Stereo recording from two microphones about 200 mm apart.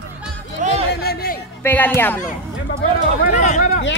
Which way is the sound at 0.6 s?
40° right (ahead or behind).